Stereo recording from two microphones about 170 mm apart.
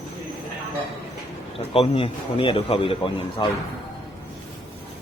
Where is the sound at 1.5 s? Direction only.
35° left (ahead or behind).